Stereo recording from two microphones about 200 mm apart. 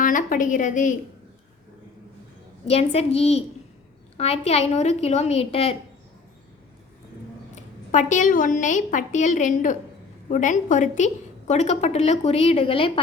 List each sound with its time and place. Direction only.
0.0 s a woman's voice: 40° left (ahead or behind)
2.6 s a woman's voice: 30° left (ahead or behind)
7.5 s a woman's voice: 40° left (ahead or behind)